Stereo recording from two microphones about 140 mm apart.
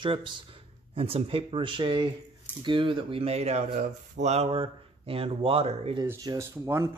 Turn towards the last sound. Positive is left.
turn(degrees=-20)  # may be behind; listen again after turning